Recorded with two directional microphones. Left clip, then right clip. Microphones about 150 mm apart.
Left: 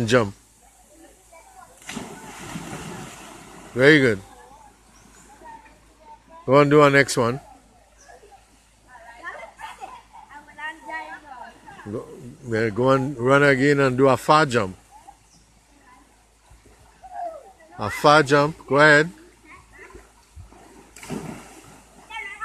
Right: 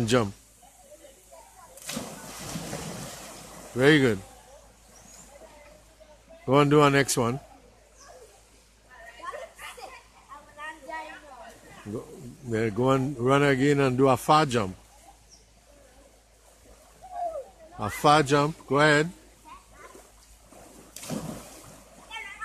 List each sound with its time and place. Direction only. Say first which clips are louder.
0.0 s a man's voice: left 5 dB; centre (ahead or behind)
3.7 s a man's voice: left 5 dB; 5° right (ahead or behind)
6.4 s a man's voice: left 5 dB; 5° right (ahead or behind)
11.9 s a man's voice: left 4 dB; centre (ahead or behind)
17.7 s a man's voice: left 5 dB; centre (ahead or behind)
20.9 s vehicle: left 2 dB; 20° right (ahead or behind)